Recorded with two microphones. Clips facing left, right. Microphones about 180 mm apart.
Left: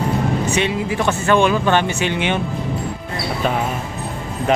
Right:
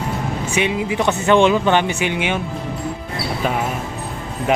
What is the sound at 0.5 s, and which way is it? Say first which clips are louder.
Speech: even; 15° right (ahead or behind).